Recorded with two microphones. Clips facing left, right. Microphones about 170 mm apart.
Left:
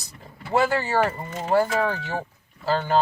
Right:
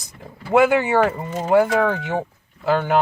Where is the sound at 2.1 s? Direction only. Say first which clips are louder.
Right 6 dB; 20° right (ahead or behind).